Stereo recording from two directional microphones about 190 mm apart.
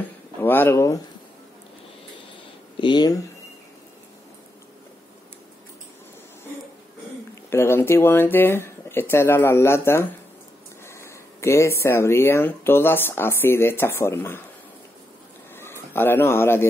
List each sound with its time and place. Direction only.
0.0 s speech: 10° left (ahead or behind)
2.8 s speech: 25° left (ahead or behind)
7.4 s speech: 10° left (ahead or behind)
15.5 s a sound: 10° left (ahead or behind)